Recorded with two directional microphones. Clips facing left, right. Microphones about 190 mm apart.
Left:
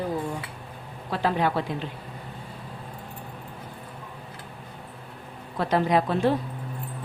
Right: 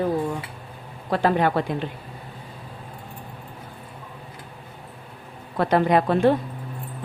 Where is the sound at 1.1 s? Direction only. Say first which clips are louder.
Right 4 dB; 50° right (ahead or behind).